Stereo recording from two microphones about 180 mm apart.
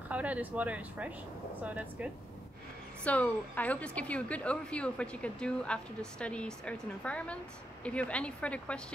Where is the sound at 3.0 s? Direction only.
10° left (ahead or behind).